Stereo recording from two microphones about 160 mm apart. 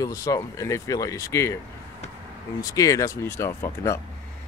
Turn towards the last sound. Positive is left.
turn(degrees=15)  # may be behind; listen again after turning